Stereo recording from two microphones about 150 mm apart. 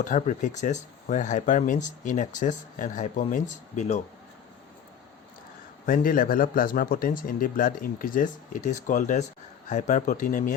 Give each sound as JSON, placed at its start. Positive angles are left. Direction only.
{"t": 0.0, "sound": "speech", "side_deg": 60}
{"t": 5.8, "sound": "speech", "side_deg": 65}